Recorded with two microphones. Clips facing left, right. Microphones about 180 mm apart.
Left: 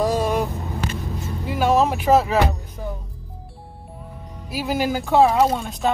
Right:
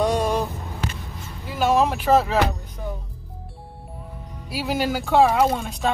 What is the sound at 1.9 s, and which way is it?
Speech, 5° left (ahead or behind).